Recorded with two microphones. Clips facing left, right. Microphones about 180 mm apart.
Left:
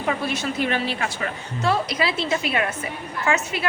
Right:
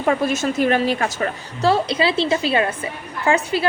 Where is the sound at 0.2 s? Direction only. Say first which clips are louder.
Right 6 dB; 45° right (ahead or behind).